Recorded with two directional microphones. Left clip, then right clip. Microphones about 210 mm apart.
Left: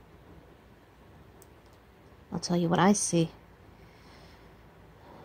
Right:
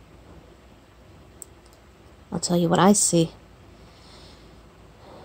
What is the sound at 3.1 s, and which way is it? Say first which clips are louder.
Speech: right 7 dB; 20° left (ahead or behind).